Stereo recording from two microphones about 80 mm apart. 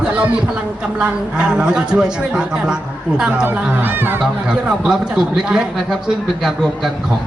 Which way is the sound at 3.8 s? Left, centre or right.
Right.